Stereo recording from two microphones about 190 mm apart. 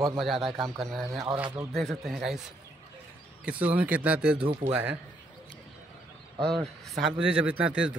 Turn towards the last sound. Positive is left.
turn(degrees=-5)  # may be behind; listen again after turning